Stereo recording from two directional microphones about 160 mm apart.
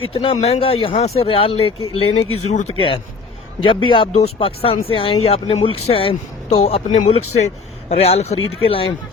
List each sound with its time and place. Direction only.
0.0 s speech: 35° left (ahead or behind)
2.7 s speech: 35° left (ahead or behind)